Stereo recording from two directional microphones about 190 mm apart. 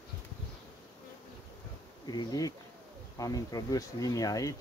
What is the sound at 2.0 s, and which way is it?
Speech, 20° left (ahead or behind).